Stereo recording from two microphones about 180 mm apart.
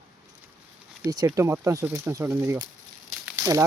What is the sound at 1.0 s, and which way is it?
Speech, 20° right (ahead or behind).